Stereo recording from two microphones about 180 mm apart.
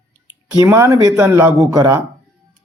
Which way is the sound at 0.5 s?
15° right (ahead or behind).